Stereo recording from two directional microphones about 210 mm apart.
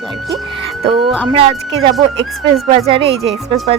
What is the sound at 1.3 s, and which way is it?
Speech, 25° right (ahead or behind).